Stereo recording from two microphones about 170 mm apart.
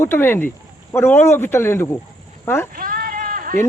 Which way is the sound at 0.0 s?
15° left (ahead or behind).